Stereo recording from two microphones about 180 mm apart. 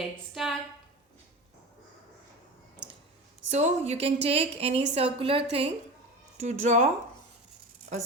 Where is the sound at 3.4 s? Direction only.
40° right (ahead or behind).